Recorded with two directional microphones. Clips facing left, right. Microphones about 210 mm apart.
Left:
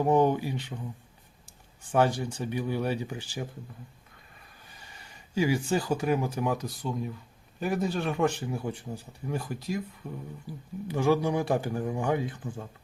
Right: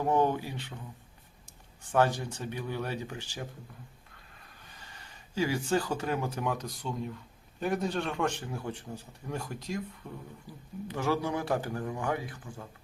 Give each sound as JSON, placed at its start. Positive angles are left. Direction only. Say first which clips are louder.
{"t": 0.0, "sound": "speech", "louder": "left 4 dB", "side_deg": 15}
{"t": 1.9, "sound": "speech", "louder": "left 2 dB", "side_deg": 15}
{"t": 4.7, "sound": "speech", "louder": "left 1 dB", "side_deg": 10}
{"t": 10.8, "sound": "speech", "louder": "left 5 dB", "side_deg": 15}